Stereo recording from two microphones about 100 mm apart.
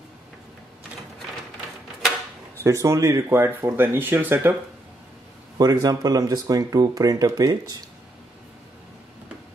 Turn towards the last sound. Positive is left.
turn(degrees=-35)  # may be behind; listen again after turning